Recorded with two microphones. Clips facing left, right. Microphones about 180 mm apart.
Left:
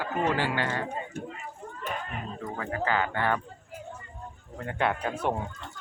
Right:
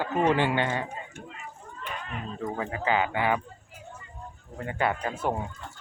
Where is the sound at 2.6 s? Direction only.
15° right (ahead or behind).